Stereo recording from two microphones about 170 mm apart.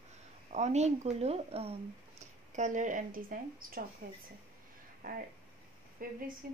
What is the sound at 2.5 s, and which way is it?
Speech, 45° right (ahead or behind).